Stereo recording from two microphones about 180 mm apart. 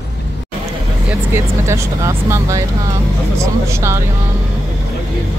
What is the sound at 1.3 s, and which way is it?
Speech, 15° right (ahead or behind).